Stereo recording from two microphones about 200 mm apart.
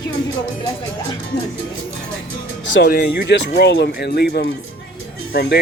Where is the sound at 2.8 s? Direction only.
55° left (ahead or behind).